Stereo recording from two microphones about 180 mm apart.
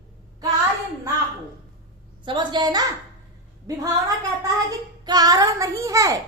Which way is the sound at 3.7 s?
20° right (ahead or behind).